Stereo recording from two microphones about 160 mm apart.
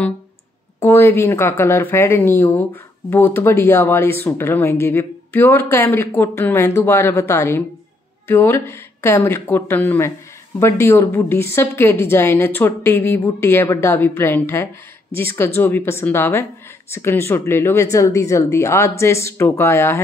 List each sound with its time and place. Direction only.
0.7 s speech: 15° left (ahead or behind)